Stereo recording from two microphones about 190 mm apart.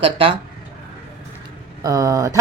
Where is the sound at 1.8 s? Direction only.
15° right (ahead or behind).